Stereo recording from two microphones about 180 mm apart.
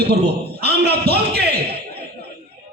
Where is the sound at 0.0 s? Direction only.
65° right (ahead or behind).